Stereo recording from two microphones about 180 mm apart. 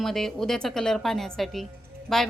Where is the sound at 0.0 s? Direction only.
Centre (ahead or behind).